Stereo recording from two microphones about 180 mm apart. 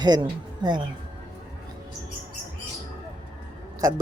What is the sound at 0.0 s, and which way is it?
Speech, 25° right (ahead or behind).